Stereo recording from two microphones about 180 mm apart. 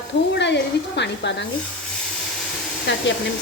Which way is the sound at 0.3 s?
75° left (ahead or behind).